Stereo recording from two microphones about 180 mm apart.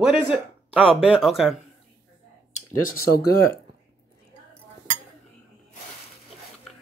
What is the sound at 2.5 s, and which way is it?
Speech, 50° left (ahead or behind).